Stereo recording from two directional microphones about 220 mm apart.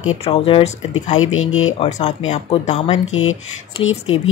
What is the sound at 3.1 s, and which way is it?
Speech, 65° left (ahead or behind).